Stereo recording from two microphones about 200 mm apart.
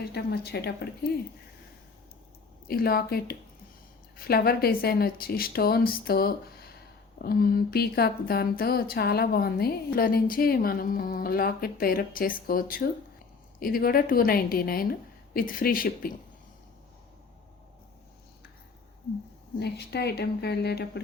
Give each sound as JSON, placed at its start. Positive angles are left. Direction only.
{"t": 0.0, "sound": "speech", "side_deg": 50}
{"t": 2.6, "sound": "speech", "side_deg": 50}
{"t": 19.5, "sound": "speech", "side_deg": 55}